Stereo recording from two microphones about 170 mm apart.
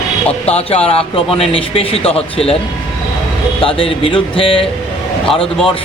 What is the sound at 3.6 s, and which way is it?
Speech, 30° left (ahead or behind).